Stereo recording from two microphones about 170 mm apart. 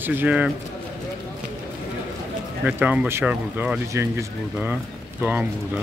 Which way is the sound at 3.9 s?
20° right (ahead or behind).